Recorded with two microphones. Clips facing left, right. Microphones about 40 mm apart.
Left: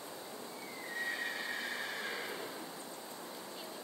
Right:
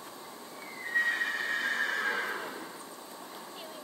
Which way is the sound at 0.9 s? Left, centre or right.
Right.